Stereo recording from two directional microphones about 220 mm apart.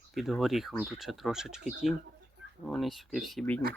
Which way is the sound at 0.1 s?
Centre (ahead or behind).